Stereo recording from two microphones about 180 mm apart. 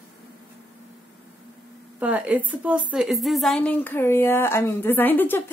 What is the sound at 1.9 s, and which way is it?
A woman's voice, 10° right (ahead or behind).